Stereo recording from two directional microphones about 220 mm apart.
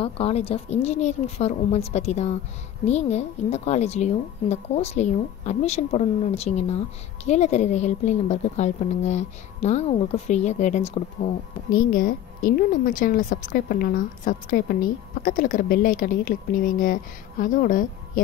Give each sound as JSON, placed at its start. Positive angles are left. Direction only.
{"t": 0.0, "sound": "a woman's voice", "side_deg": 25}
{"t": 11.7, "sound": "a woman's voice", "side_deg": 40}